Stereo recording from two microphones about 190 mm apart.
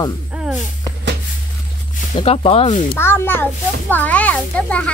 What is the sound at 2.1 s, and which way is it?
Speech, 30° left (ahead or behind).